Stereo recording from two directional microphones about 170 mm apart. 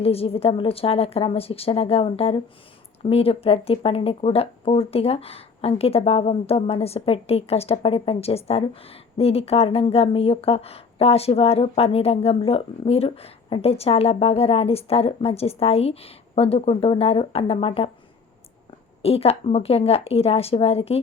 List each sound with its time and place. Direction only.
0.0 s speech: 35° left (ahead or behind)
19.0 s speech: 35° left (ahead or behind)